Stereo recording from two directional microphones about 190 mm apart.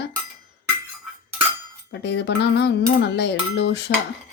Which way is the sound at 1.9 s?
65° left (ahead or behind).